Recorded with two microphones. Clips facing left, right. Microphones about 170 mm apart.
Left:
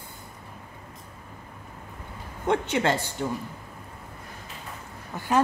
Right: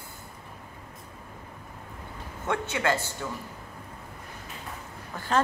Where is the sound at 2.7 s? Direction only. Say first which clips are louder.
Left 3 dB; 20° left (ahead or behind).